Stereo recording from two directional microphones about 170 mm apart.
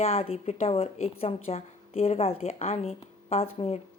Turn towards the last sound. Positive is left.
turn(degrees=35)  # may be behind; listen again after turning